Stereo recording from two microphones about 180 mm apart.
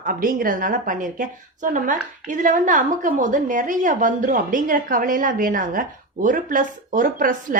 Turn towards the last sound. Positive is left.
turn(degrees=-50)  # may be behind; listen again after turning